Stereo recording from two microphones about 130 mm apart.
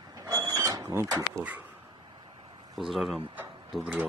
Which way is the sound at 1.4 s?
10° right (ahead or behind).